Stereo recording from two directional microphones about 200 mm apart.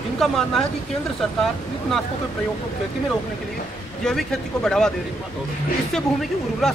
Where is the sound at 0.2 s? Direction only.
Centre (ahead or behind).